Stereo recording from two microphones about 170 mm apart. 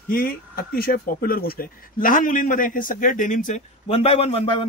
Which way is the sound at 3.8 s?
35° left (ahead or behind).